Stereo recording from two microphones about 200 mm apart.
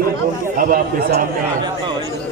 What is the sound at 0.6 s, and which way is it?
Speech, 45° right (ahead or behind).